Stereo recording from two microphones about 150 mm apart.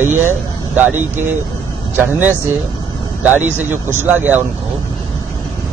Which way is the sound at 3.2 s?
10° right (ahead or behind).